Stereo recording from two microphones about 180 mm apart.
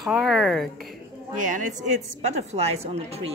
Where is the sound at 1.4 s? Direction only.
45° right (ahead or behind).